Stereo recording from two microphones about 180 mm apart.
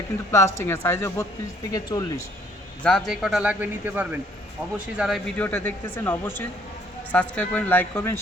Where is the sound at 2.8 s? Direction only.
Centre (ahead or behind).